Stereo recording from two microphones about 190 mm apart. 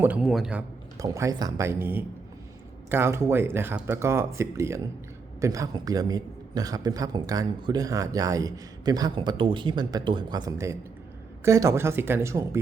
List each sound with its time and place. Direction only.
0.0 s a man's voice: 5° right (ahead or behind)
0.9 s a man's voice: 15° right (ahead or behind)